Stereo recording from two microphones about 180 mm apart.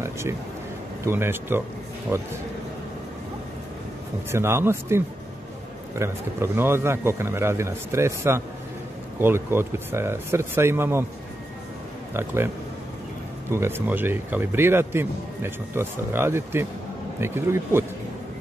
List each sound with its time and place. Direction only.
0.0 s speech: 15° right (ahead or behind)
4.3 s speech: 15° right (ahead or behind)
12.1 s speech: 15° right (ahead or behind)
13.5 s speech: 15° right (ahead or behind)